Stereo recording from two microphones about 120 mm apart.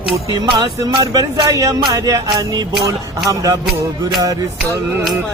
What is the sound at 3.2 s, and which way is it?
Music, 30° right (ahead or behind).